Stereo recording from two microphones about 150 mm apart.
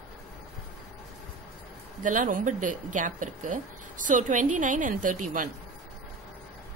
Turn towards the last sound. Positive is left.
turn(degrees=-65)  # may be behind; listen again after turning